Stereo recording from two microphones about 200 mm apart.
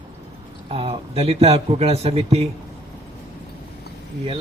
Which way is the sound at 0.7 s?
30° right (ahead or behind).